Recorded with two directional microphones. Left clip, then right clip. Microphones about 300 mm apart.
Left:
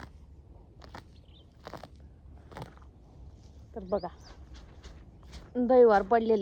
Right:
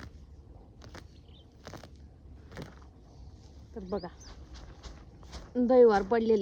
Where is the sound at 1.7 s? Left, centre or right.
Left.